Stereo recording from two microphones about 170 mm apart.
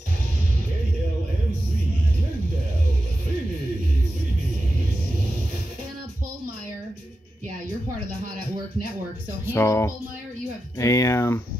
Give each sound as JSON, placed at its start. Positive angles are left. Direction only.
{"t": 9.5, "sound": "speech", "side_deg": 15}